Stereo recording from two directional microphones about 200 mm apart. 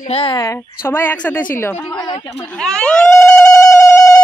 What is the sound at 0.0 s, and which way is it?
A man's voice, 30° left (ahead or behind).